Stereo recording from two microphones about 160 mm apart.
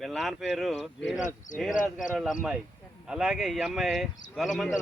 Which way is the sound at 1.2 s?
50° left (ahead or behind).